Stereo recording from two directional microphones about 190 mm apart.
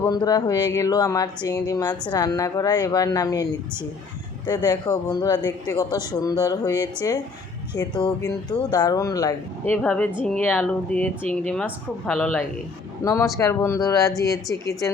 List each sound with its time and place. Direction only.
0.1 s speech: 20° left (ahead or behind)
4.4 s speech: 20° left (ahead or behind)
13.0 s speech: 15° left (ahead or behind)
14.5 s a woman's voice: 60° left (ahead or behind)